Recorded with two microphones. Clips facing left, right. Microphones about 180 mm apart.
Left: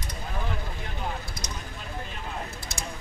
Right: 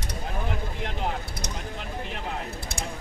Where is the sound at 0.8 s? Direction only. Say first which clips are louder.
Right 4 dB; 70° right (ahead or behind).